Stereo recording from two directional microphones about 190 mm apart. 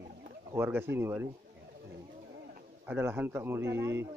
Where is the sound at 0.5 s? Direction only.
10° right (ahead or behind).